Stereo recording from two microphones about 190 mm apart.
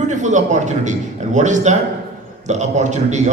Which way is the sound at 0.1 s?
40° right (ahead or behind).